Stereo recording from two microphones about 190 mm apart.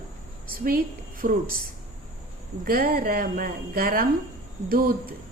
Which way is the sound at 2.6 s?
50° right (ahead or behind).